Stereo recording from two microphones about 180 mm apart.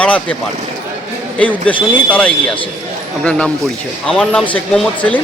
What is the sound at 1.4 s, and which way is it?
Speech, 10° left (ahead or behind).